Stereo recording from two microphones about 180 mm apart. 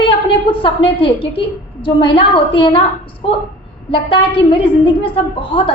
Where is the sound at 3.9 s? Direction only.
30° left (ahead or behind).